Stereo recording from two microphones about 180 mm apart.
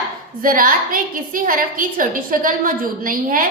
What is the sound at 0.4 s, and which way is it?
A woman's voice, 50° right (ahead or behind).